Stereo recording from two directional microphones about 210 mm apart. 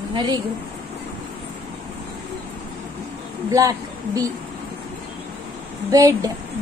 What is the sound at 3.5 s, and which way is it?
Speech, 15° right (ahead or behind).